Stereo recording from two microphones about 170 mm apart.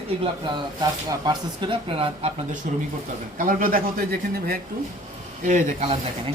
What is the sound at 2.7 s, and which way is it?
A man's voice, 50° right (ahead or behind).